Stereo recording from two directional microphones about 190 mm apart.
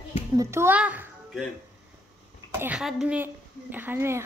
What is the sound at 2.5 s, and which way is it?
A woman's voice, 10° right (ahead or behind).